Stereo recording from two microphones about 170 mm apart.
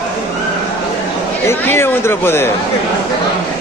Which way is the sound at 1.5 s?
15° left (ahead or behind).